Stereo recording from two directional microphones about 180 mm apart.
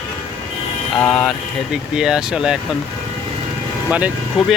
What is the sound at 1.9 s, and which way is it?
Speech, 5° right (ahead or behind).